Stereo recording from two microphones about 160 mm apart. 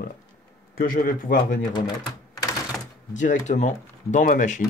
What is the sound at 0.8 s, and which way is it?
Speech, 60° left (ahead or behind).